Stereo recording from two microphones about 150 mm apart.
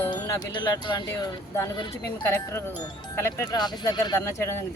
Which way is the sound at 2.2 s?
15° left (ahead or behind).